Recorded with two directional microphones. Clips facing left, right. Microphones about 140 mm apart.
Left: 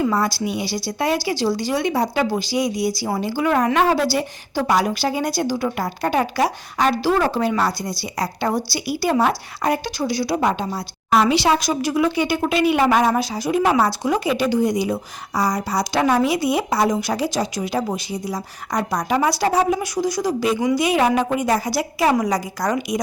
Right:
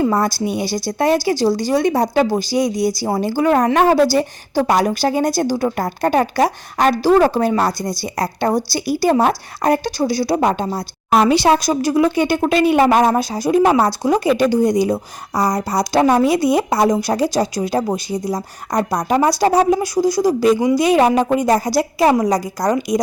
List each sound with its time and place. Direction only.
0.0 s speech: 45° right (ahead or behind)